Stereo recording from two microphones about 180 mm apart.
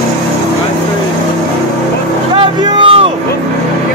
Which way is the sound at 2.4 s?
30° right (ahead or behind).